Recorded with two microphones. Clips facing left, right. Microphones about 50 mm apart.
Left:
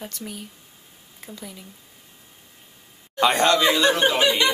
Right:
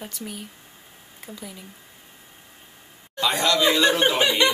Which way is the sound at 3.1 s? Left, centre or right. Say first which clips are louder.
Left 3 dB; left.